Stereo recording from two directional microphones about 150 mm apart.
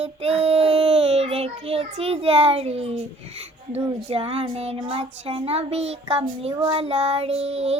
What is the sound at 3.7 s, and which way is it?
Speech, 40° right (ahead or behind).